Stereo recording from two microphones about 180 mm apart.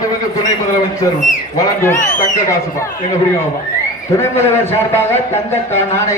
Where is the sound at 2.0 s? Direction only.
45° left (ahead or behind).